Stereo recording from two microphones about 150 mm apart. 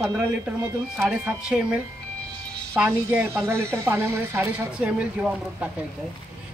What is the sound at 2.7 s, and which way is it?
Speech, 15° right (ahead or behind).